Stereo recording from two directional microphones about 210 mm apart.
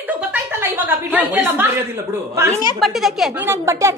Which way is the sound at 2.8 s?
Centre (ahead or behind).